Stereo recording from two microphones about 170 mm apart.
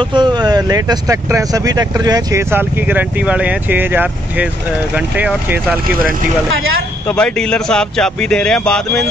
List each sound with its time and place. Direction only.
0.0 s speech: 25° right (ahead or behind); by 5.8 s 10° right (ahead or behind)
7.1 s speech: 5° left (ahead or behind)